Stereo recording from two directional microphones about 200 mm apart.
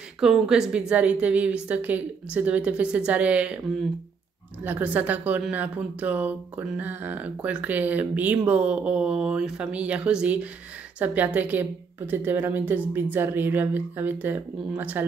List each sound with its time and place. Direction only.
0.2 s a woman's voice: centre (ahead or behind)
4.6 s a woman's voice: 10° right (ahead or behind)